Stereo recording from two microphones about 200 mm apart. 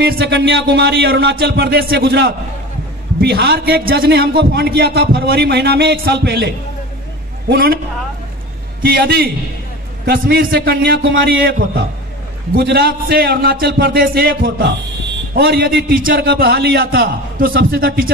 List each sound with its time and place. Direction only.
0.0 s a man's voice: 55° right (ahead or behind)
8.8 s a man's voice: 50° right (ahead or behind)